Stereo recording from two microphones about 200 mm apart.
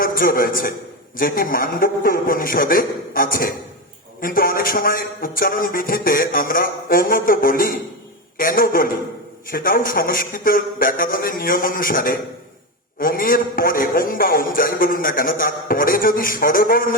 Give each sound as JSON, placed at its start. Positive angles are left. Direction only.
{"t": 0.0, "sound": "a man's voice", "side_deg": 45}